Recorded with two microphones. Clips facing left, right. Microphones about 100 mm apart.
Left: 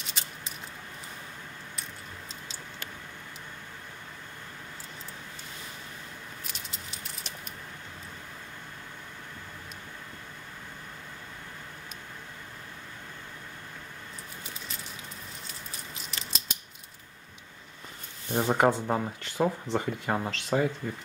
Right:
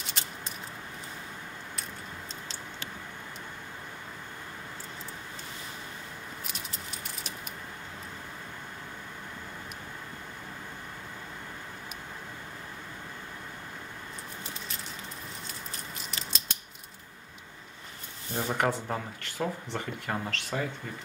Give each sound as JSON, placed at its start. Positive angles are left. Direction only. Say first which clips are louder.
{"t": 16.1, "sound": "scissors", "louder": "left 1 dB", "side_deg": 0}
{"t": 18.3, "sound": "speech", "louder": "left 5 dB", "side_deg": 25}